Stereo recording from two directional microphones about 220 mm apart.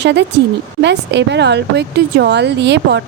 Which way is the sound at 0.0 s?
50° right (ahead or behind).